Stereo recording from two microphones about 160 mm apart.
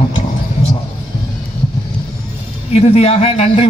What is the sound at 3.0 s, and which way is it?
Speech, 40° left (ahead or behind).